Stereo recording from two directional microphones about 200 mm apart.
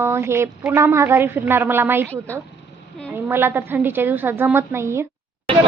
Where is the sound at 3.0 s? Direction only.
10° right (ahead or behind).